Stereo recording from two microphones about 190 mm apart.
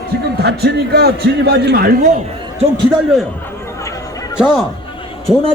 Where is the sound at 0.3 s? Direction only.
60° right (ahead or behind).